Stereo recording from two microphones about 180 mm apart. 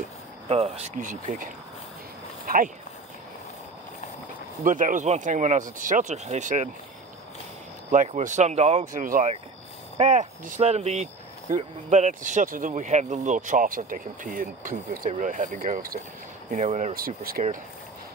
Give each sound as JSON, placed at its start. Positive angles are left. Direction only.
{"t": 0.5, "sound": "speech", "side_deg": -35}
{"t": 4.6, "sound": "speech", "side_deg": -45}
{"t": 7.9, "sound": "speech", "side_deg": -45}